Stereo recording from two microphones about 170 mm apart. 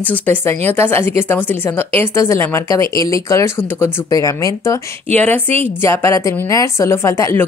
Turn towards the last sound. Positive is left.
turn(degrees=15)  # may be behind; listen again after turning